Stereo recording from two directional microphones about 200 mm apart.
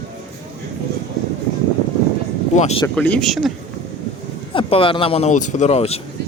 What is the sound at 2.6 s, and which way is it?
Speech, 30° left (ahead or behind).